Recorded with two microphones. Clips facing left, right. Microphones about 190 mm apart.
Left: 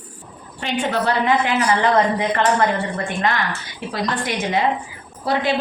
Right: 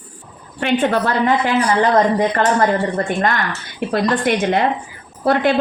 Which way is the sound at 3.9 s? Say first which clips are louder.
Right 7 dB; 55° right (ahead or behind).